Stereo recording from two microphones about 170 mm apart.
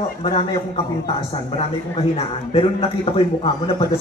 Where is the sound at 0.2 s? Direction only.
35° left (ahead or behind).